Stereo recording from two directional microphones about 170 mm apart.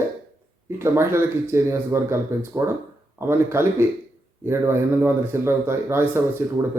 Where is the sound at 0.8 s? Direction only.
15° right (ahead or behind).